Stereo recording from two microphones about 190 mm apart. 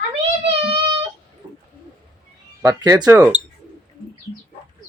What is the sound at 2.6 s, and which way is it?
Speech, 20° right (ahead or behind).